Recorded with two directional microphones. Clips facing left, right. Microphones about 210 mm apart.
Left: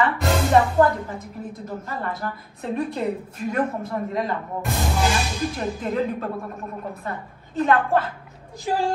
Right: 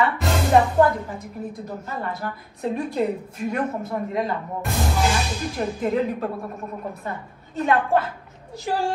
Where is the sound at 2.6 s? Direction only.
Centre (ahead or behind).